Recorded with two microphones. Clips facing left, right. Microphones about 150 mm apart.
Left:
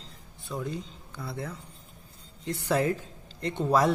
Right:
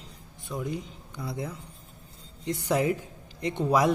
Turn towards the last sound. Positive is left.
turn(degrees=-10)  # may be behind; listen again after turning